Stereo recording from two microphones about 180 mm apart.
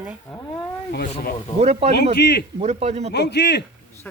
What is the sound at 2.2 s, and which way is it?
Speech, 65° left (ahead or behind).